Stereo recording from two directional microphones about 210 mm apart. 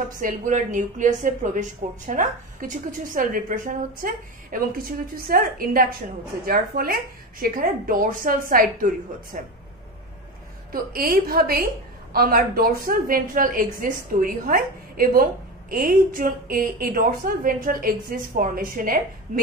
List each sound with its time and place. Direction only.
0.2 s a woman's voice: 40° right (ahead or behind)
10.7 s a woman's voice: 45° right (ahead or behind)